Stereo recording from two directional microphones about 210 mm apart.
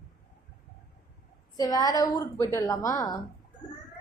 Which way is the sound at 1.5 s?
15° left (ahead or behind).